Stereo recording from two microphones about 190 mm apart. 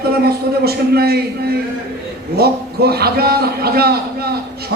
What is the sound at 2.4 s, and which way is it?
A man's voice, 55° right (ahead or behind).